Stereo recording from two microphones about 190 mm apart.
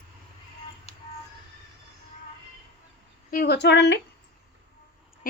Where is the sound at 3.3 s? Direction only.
55° left (ahead or behind).